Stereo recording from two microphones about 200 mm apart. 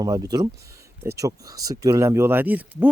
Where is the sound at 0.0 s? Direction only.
20° right (ahead or behind).